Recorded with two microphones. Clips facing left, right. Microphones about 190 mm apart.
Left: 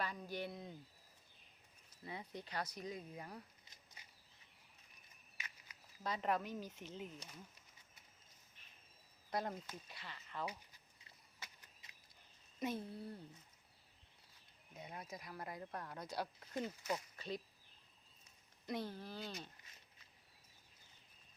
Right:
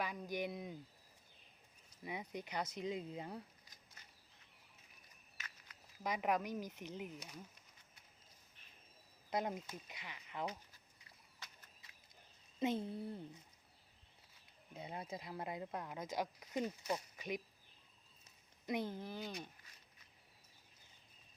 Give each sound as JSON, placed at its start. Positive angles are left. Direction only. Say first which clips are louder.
{"t": 0.0, "sound": "speech", "louder": "right 3 dB", "side_deg": -15}
{"t": 2.0, "sound": "speech", "louder": "right 3 dB", "side_deg": -15}
{"t": 6.0, "sound": "speech", "louder": "right 2 dB", "side_deg": -15}
{"t": 9.3, "sound": "speech", "louder": "right 2 dB", "side_deg": -20}
{"t": 11.3, "sound": "a sound", "louder": "left 1 dB", "side_deg": 15}
{"t": 12.5, "sound": "speech", "louder": "right 4 dB", "side_deg": -20}
{"t": 14.7, "sound": "speech", "louder": "right 4 dB", "side_deg": -30}
{"t": 18.6, "sound": "speech", "louder": "right 3 dB", "side_deg": -15}